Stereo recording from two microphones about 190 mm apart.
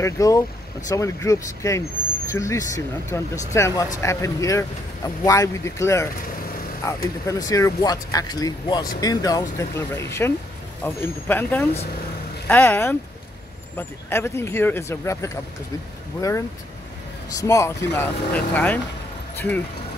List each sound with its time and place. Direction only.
0.0 s speech: 15° left (ahead or behind)